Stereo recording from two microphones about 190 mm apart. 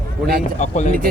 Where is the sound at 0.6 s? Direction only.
40° left (ahead or behind).